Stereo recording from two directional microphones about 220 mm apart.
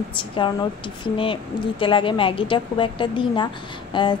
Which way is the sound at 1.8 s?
25° left (ahead or behind).